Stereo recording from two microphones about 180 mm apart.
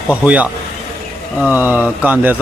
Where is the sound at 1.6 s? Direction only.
10° right (ahead or behind).